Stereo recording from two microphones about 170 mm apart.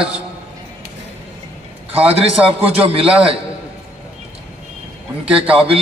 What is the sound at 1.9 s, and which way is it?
A man's voice, 35° right (ahead or behind).